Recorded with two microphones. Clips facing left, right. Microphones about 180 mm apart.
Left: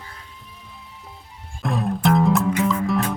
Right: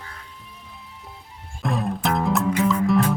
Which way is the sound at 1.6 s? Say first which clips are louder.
Left 3 dB; centre (ahead or behind).